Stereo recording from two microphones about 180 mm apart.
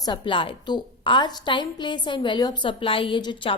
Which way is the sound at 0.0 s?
25° left (ahead or behind).